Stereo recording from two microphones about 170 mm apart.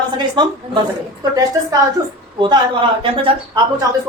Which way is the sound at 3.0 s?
30° right (ahead or behind).